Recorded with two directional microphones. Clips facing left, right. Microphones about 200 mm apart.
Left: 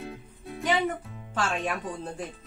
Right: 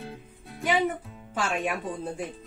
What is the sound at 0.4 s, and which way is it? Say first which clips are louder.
Music: left 7 dB; centre (ahead or behind).